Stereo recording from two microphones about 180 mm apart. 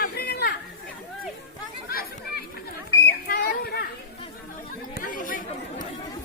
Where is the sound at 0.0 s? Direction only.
60° left (ahead or behind).